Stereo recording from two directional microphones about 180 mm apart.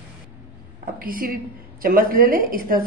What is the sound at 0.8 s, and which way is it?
A woman's voice, 50° right (ahead or behind).